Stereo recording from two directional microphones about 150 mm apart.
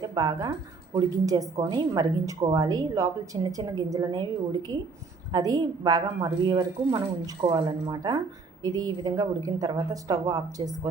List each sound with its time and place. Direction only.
0.0 s a woman's voice: 25° right (ahead or behind)